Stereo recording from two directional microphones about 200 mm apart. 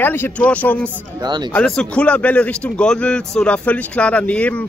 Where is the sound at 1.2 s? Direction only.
20° right (ahead or behind).